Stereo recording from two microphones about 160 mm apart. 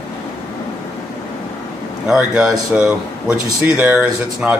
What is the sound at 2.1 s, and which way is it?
A man's voice, 5° right (ahead or behind).